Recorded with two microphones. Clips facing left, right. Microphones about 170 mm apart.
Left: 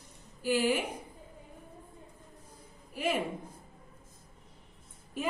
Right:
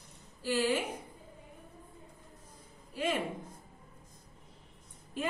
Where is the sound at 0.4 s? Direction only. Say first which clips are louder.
Left 2 dB; 10° left (ahead or behind).